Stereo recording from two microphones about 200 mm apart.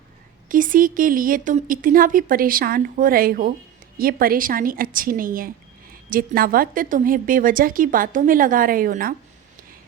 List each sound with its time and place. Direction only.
0.4 s a woman's voice: 40° right (ahead or behind)